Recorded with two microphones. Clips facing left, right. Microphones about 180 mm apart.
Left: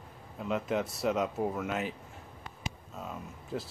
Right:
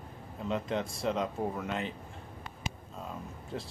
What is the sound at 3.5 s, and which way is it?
Speech, centre (ahead or behind).